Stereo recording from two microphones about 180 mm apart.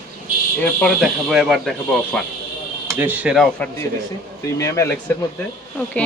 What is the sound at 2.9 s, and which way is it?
Speech, 10° right (ahead or behind).